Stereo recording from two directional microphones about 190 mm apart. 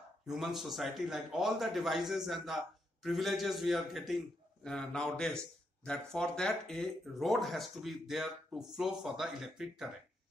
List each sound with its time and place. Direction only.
0.3 s speech: centre (ahead or behind)